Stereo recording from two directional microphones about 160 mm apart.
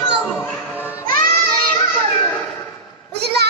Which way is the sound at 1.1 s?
65° right (ahead or behind).